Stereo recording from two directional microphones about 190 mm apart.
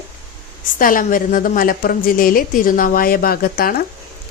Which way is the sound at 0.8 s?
45° left (ahead or behind).